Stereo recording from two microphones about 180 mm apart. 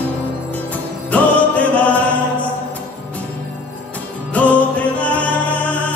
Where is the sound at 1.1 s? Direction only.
10° left (ahead or behind).